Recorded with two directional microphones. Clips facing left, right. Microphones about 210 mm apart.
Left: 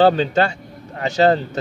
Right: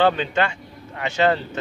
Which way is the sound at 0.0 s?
35° left (ahead or behind).